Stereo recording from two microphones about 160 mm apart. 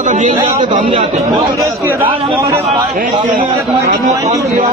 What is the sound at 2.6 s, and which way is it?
Speech, 50° right (ahead or behind).